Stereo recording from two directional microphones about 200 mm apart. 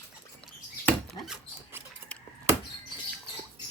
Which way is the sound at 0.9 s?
Centre (ahead or behind).